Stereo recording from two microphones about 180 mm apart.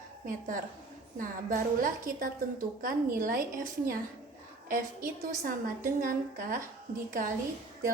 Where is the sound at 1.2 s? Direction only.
50° right (ahead or behind).